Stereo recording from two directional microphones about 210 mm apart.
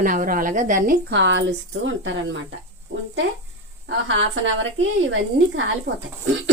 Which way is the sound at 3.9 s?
65° right (ahead or behind).